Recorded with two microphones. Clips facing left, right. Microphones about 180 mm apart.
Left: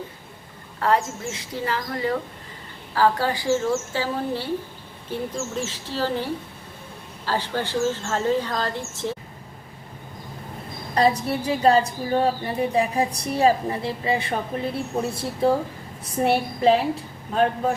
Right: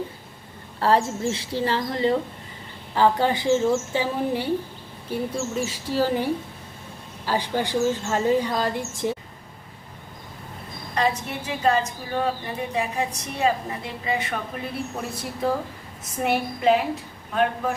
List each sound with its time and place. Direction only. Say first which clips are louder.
0.8 s a woman's voice: right 2 dB; 30° right (ahead or behind); by 9.1 s 15° right (ahead or behind)
10.9 s a woman's voice: left 4 dB; 35° left (ahead or behind)